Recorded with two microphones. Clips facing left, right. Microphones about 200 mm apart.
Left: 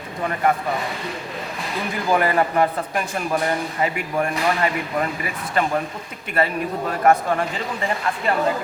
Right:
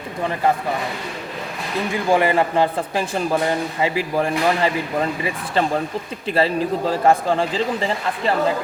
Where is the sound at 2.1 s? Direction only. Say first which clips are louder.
Right 2 dB; 25° right (ahead or behind).